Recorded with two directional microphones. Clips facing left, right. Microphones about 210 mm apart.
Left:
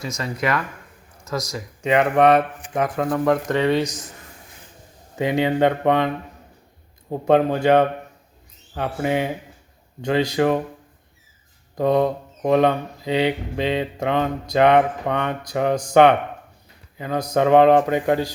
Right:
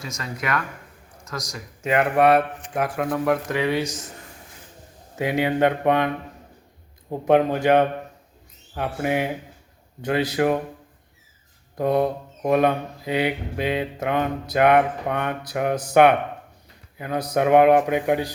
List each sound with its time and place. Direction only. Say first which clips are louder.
0.0 s speech: left 5 dB; centre (ahead or behind)
5.1 s mantra: left 2 dB; 10° right (ahead or behind)
7.3 s mantra: left 1 dB; 10° right (ahead or behind)
11.8 s mantra: left 2 dB; 10° right (ahead or behind)